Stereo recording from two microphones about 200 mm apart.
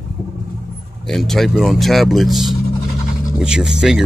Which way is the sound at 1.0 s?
Centre (ahead or behind).